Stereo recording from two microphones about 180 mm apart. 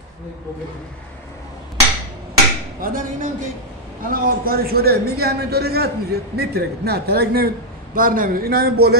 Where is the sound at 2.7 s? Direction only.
50° right (ahead or behind).